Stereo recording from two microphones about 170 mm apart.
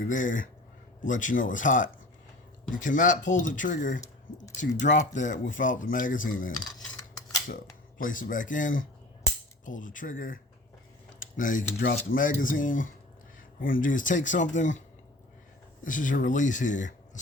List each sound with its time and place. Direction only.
0.1 s speech: 50° left (ahead or behind)
6.5 s a sound: 25° left (ahead or behind)
7.4 s speech: 55° left (ahead or behind)
15.8 s speech: 50° left (ahead or behind)